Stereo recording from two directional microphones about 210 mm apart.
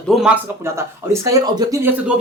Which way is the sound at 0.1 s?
Centre (ahead or behind).